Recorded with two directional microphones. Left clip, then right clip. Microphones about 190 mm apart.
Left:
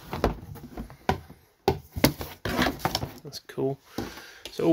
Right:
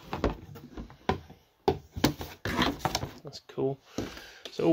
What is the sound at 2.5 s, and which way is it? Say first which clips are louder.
Drawer open or close: left 2 dB; 5° left (ahead or behind).